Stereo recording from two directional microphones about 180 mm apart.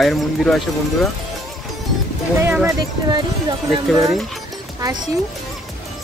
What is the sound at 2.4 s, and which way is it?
Speech, 15° right (ahead or behind).